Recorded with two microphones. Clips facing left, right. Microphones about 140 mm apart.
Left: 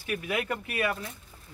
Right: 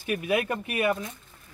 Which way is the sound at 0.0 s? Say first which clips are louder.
Right 5 dB; 20° right (ahead or behind).